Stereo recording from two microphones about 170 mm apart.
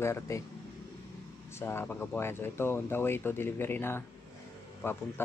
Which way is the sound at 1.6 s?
15° left (ahead or behind).